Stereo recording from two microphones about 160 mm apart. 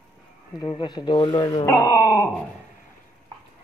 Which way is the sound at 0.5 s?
25° left (ahead or behind).